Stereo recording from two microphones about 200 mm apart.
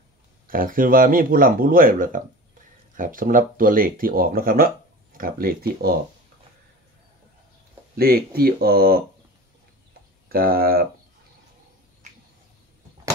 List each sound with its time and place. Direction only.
0.5 s speech: 45° right (ahead or behind)
8.0 s speech: 50° right (ahead or behind)
10.2 s speech: 50° right (ahead or behind)